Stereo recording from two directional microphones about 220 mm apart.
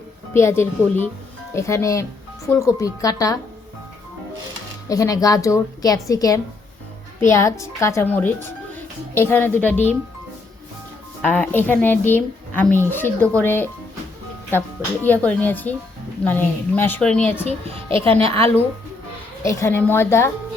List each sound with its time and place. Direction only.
0.3 s speech: 10° left (ahead or behind)
4.9 s speech: 15° left (ahead or behind)
11.2 s speech: 5° left (ahead or behind)
15.0 s speech: 10° left (ahead or behind)
17.8 s speech: 25° right (ahead or behind)
18.3 s speech: 10° left (ahead or behind)